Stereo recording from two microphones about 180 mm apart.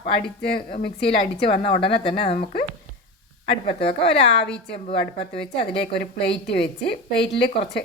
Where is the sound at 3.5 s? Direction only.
30° left (ahead or behind).